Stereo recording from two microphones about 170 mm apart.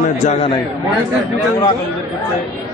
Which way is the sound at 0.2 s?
45° left (ahead or behind).